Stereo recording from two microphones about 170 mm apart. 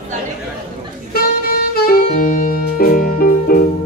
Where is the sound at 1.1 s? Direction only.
65° left (ahead or behind).